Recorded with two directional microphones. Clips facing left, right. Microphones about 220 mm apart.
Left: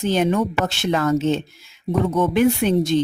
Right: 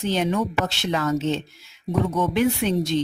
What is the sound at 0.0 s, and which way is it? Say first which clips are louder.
Speech: left 4 dB; 50° left (ahead or behind).